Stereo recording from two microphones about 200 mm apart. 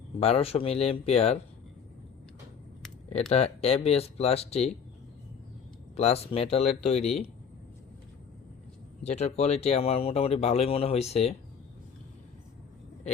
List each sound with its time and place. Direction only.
0.2 s speech: 30° left (ahead or behind)
3.1 s speech: 30° left (ahead or behind)
6.0 s speech: 30° left (ahead or behind)
9.0 s speech: 35° left (ahead or behind)